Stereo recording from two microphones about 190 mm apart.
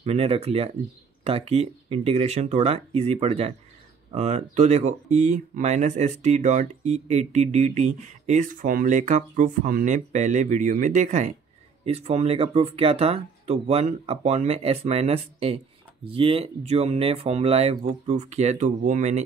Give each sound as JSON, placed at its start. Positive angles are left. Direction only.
{"t": 0.0, "sound": "speech", "side_deg": -30}